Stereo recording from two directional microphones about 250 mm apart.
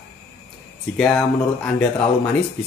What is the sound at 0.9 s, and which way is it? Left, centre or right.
Speech, centre.